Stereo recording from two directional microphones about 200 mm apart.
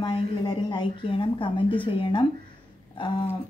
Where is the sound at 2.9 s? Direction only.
20° left (ahead or behind).